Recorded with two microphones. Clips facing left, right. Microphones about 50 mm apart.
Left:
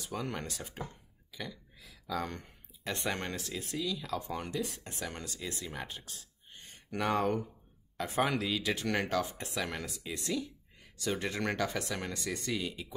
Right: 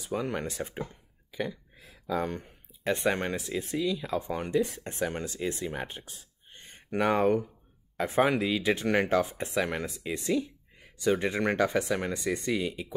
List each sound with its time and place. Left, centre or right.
0.0 s speech: centre
7.2 s speech: centre
8.0 s speech: right
8.3 s speech: centre